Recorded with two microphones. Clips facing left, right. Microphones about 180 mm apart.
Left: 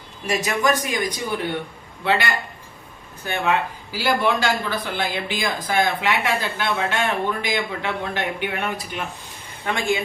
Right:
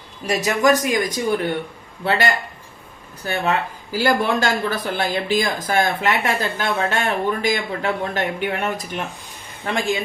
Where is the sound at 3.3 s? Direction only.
45° right (ahead or behind).